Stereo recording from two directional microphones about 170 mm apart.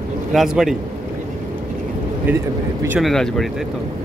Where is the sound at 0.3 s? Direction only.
Centre (ahead or behind).